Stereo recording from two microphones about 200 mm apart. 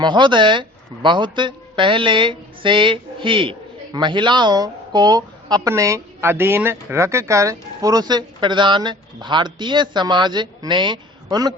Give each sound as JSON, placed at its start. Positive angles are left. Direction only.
{"t": 0.0, "sound": "speech", "side_deg": -25}